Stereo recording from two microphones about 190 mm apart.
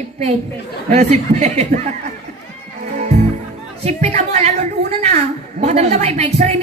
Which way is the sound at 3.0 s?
35° right (ahead or behind).